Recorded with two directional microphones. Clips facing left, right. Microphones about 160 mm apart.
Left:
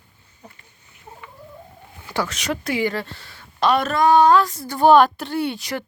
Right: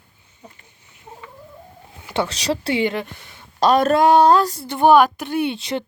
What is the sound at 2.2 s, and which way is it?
Speech, 35° right (ahead or behind).